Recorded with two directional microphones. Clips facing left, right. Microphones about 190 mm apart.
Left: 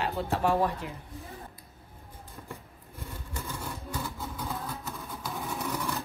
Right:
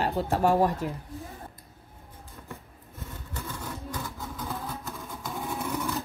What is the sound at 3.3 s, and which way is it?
Vehicle, 10° left (ahead or behind).